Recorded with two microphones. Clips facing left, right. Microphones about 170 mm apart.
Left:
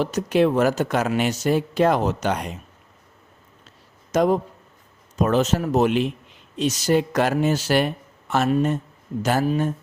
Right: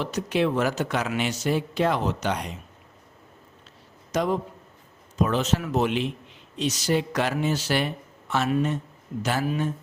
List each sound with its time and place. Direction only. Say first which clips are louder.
0.0 s speech: left 5 dB; 45° left (ahead or behind)
4.1 s a man's voice: left 6 dB; 45° left (ahead or behind)